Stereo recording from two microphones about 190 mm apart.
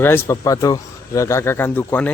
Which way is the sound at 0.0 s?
10° left (ahead or behind).